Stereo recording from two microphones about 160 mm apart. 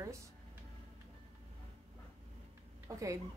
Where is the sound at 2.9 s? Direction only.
20° right (ahead or behind).